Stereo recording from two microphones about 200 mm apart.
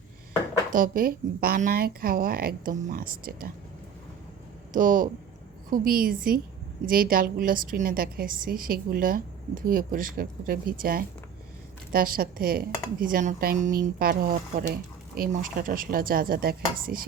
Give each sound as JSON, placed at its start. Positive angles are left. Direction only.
{"t": 0.7, "sound": "a woman's voice", "side_deg": -45}
{"t": 4.7, "sound": "a woman's voice", "side_deg": -40}